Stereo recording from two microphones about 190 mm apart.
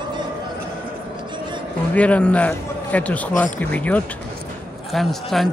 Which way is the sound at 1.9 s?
5° left (ahead or behind).